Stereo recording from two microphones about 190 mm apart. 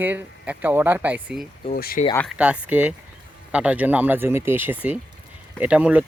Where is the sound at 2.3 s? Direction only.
5° right (ahead or behind).